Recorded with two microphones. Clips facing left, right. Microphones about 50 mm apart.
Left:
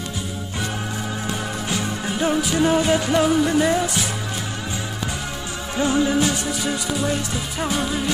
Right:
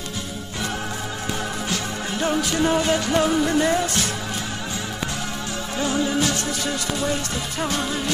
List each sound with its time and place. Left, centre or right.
1.7 s music: centre
5.8 s music: centre